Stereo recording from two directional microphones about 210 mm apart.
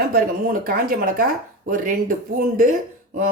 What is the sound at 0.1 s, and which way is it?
A woman's voice, 40° right (ahead or behind).